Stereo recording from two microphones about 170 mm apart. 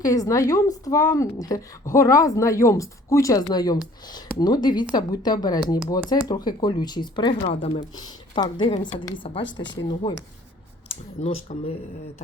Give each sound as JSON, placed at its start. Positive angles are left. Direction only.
{"t": 0.0, "sound": "speech", "side_deg": 20}
{"t": 7.9, "sound": "speech", "side_deg": 25}
{"t": 10.8, "sound": "speech", "side_deg": 35}